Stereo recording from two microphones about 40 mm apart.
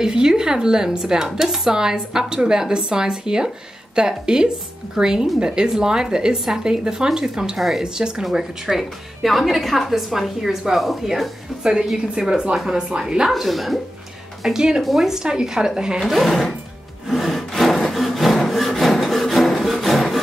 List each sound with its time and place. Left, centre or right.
0.0 s a woman's voice: centre
7.5 s a woman's voice: centre
7.8 s a woman's voice: centre
12.3 s a woman's voice: right
13.3 s a woman's voice: centre
14.4 s a woman's voice: centre
14.8 s a woman's voice: centre
15.0 s a woman's voice: centre
16.0 s a woman's voice: centre
17.1 s wood: centre